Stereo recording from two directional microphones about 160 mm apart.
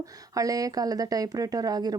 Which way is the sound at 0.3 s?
20° right (ahead or behind).